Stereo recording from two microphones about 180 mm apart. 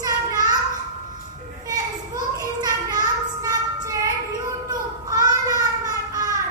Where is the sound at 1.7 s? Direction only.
20° right (ahead or behind).